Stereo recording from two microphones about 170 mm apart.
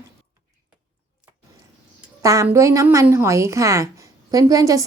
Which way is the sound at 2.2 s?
15° right (ahead or behind).